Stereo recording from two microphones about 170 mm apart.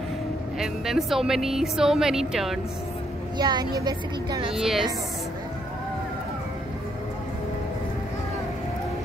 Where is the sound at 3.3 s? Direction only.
25° right (ahead or behind).